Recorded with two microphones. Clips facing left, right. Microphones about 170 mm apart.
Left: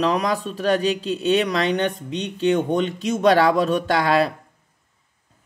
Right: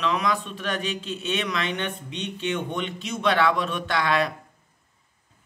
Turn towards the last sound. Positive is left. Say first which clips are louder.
# left 5 dB
turn(degrees=35)  # may be behind; listen again after turning